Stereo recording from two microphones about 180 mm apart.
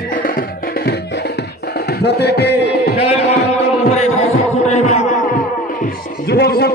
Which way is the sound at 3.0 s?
35° left (ahead or behind).